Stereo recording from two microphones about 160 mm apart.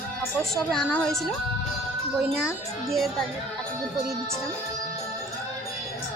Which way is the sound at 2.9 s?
Centre (ahead or behind).